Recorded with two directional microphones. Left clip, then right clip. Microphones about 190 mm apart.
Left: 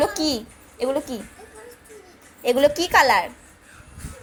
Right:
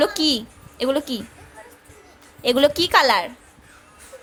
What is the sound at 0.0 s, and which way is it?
A child's voice, 25° right (ahead or behind).